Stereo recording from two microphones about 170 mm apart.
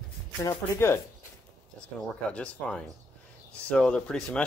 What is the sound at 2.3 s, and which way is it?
Speech, 5° left (ahead or behind).